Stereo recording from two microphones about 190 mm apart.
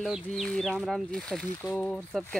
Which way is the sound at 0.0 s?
Centre (ahead or behind).